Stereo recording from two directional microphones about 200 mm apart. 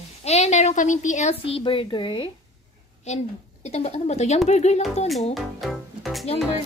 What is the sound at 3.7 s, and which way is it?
A woman's voice, 35° left (ahead or behind).